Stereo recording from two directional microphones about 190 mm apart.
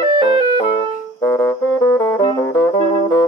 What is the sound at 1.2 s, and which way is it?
Music, 15° left (ahead or behind).